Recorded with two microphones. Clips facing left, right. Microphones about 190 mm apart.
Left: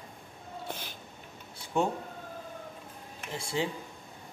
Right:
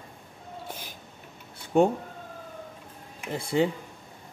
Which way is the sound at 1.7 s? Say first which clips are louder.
Right 8 dB; 55° right (ahead or behind).